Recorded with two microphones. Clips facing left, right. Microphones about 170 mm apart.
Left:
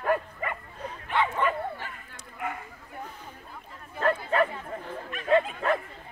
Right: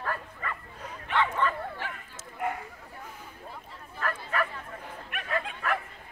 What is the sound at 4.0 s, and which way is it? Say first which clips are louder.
Chatter: left 7 dB; 30° left (ahead or behind).